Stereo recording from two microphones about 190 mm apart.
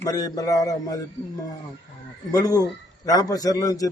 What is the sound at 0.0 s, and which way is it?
Speech, 20° left (ahead or behind).